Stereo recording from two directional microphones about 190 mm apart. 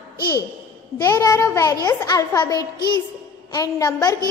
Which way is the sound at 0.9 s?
20° left (ahead or behind).